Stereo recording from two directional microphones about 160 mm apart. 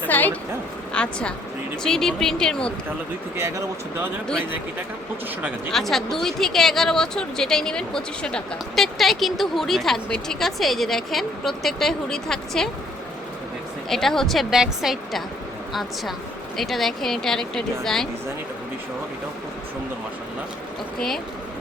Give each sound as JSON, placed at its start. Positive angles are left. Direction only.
{"t": 0.1, "sound": "a woman's voice", "side_deg": 10}
{"t": 3.3, "sound": "speech", "side_deg": -15}
{"t": 5.7, "sound": "speech", "side_deg": 0}
{"t": 13.9, "sound": "speech", "side_deg": 0}